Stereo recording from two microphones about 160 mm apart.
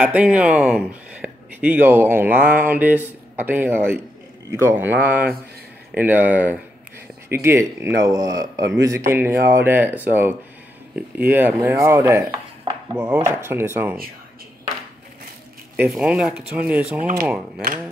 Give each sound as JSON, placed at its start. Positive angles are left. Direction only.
{"t": 0.0, "sound": "speech", "side_deg": -5}
{"t": 15.7, "sound": "speech", "side_deg": -5}